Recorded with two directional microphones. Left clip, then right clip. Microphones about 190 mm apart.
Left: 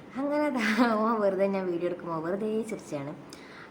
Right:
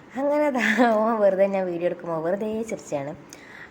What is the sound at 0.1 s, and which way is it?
A woman's voice, 20° right (ahead or behind).